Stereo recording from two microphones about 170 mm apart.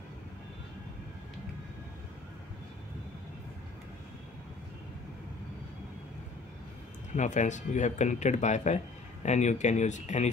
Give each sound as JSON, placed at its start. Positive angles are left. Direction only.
{"t": 7.2, "sound": "speech", "side_deg": 45}